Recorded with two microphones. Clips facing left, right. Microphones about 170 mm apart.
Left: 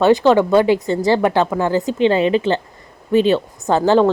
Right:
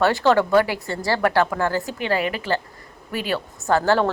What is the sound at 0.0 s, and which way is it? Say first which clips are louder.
Speech: left 5 dB; 20° left (ahead or behind).